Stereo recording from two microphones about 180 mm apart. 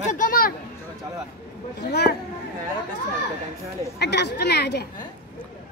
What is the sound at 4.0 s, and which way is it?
Speech, 70° left (ahead or behind).